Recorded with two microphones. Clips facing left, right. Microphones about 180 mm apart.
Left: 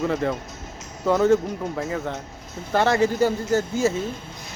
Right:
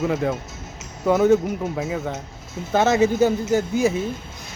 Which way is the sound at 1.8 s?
5° right (ahead or behind).